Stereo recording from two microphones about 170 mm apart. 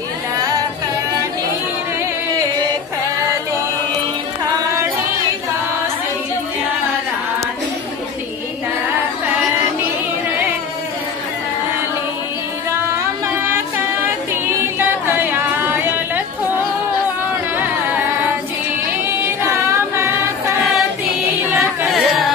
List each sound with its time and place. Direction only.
0.4 s singing: 20° right (ahead or behind)
15.0 s a sound: 10° right (ahead or behind)
19.2 s female singing: 15° right (ahead or behind)
21.5 s music: centre (ahead or behind)